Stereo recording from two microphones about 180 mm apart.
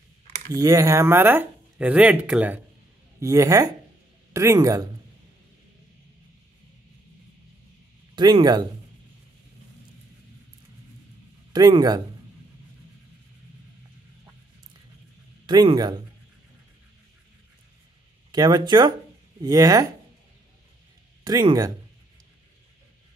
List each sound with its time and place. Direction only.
0.5 s speech: 20° right (ahead or behind)
8.2 s speech: 25° right (ahead or behind)
11.5 s speech: 20° right (ahead or behind)
15.4 s speech: 25° right (ahead or behind)
18.3 s speech: 20° right (ahead or behind)
21.2 s speech: 20° right (ahead or behind)